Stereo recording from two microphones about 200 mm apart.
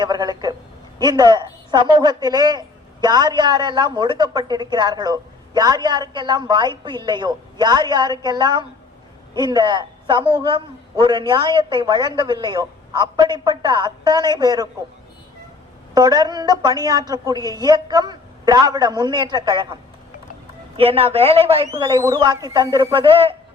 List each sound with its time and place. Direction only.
0.0 s a sound: 20° right (ahead or behind)
0.9 s a woman's voice: 20° right (ahead or behind)
16.0 s a woman's voice: 20° right (ahead or behind)
21.7 s a woman's voice: 15° right (ahead or behind)